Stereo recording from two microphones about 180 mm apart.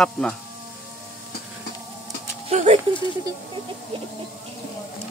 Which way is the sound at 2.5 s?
40° right (ahead or behind).